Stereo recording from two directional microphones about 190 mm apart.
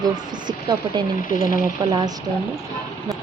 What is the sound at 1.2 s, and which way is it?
Speech, 45° left (ahead or behind).